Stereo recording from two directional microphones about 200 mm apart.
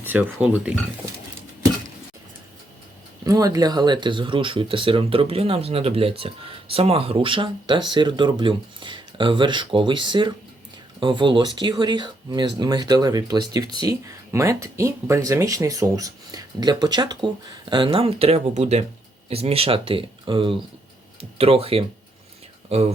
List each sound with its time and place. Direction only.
0.0 s speech: 10° right (ahead or behind)
3.2 s speech: 15° right (ahead or behind)